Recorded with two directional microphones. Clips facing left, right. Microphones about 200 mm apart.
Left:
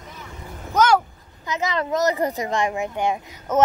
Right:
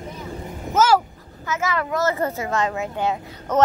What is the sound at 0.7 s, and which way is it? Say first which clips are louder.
Vehicle: even; 5° right (ahead or behind).